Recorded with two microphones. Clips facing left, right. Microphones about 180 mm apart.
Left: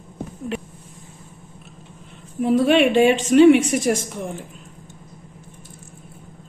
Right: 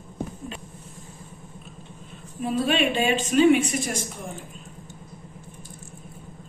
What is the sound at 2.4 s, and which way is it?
Speech, 70° left (ahead or behind).